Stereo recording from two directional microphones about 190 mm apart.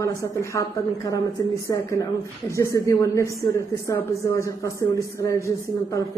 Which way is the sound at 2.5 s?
15° left (ahead or behind).